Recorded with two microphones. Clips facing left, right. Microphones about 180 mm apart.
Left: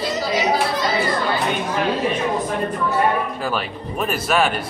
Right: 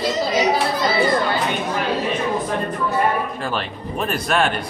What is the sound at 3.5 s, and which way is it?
A man's voice, 5° left (ahead or behind).